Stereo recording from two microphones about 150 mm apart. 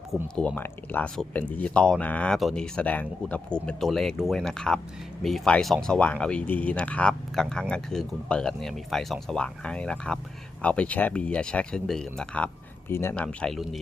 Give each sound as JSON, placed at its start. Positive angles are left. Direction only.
{"t": 0.3, "sound": "speech", "side_deg": 10}
{"t": 12.9, "sound": "speech", "side_deg": 15}
{"t": 13.2, "sound": "speech", "side_deg": 5}